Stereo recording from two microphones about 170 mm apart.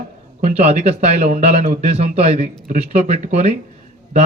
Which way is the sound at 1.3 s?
45° right (ahead or behind).